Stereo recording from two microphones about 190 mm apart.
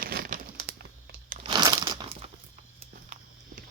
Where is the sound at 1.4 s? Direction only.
25° right (ahead or behind).